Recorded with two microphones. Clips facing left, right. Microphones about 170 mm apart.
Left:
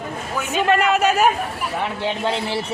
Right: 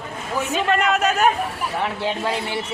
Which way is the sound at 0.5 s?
Centre (ahead or behind).